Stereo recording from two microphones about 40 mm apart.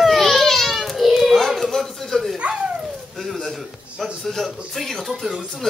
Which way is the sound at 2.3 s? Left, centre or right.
Right.